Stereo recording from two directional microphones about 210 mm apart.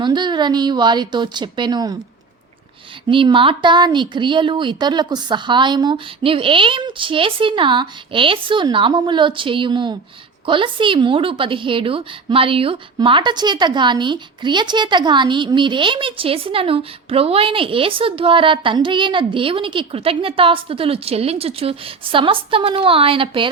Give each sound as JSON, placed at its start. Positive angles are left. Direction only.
{"t": 0.0, "sound": "a woman's voice", "side_deg": -20}
{"t": 3.1, "sound": "a woman's voice", "side_deg": -25}